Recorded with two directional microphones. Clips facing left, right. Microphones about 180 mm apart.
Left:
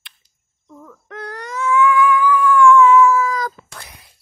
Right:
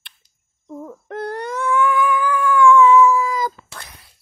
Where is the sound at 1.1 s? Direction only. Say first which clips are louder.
Right 5 dB; 55° right (ahead or behind).